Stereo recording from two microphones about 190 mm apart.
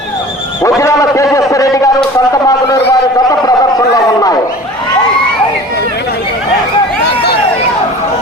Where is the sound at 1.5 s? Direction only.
15° left (ahead or behind).